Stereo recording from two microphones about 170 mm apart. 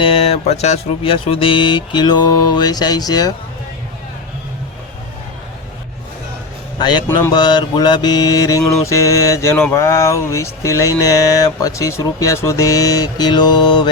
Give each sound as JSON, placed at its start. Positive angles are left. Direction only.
{"t": 0.0, "sound": "music", "side_deg": 35}
{"t": 2.6, "sound": "speech", "side_deg": 25}
{"t": 6.7, "sound": "speech", "side_deg": 25}
{"t": 8.7, "sound": "mantra", "side_deg": 15}
{"t": 9.6, "sound": "speech", "side_deg": 15}